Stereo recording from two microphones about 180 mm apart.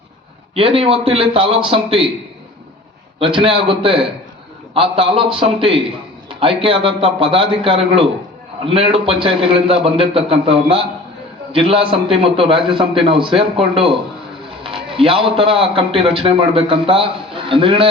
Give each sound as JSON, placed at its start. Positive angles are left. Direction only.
{"t": 0.5, "sound": "a man's voice", "side_deg": -30}
{"t": 3.2, "sound": "a man's voice", "side_deg": -30}